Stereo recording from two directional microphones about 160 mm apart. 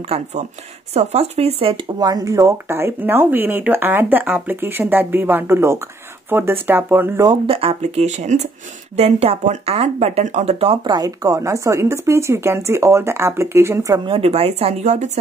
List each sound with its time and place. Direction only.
0.1 s speech: 45° right (ahead or behind)
2.0 s speech: 20° right (ahead or behind)
7.2 s speech: 35° right (ahead or behind); by 14.0 s 20° right (ahead or behind)
14.0 s speech: 35° right (ahead or behind)